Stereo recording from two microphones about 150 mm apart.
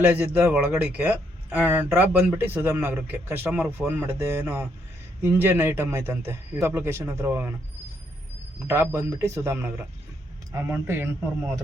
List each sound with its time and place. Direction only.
0.0 s speech: 10° right (ahead or behind)
8.5 s speech: 15° right (ahead or behind)